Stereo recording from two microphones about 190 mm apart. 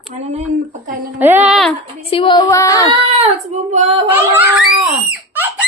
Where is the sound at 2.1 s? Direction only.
30° left (ahead or behind).